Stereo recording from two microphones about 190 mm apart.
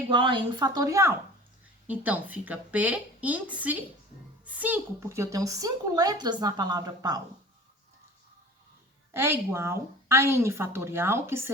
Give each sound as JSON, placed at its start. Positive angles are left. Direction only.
{"t": 0.1, "sound": "a woman's voice", "side_deg": -25}
{"t": 9.1, "sound": "a woman's voice", "side_deg": -10}